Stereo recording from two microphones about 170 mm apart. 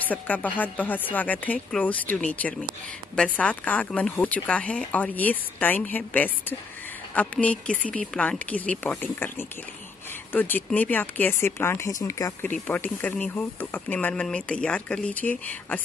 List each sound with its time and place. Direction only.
0.1 s speech: 10° left (ahead or behind)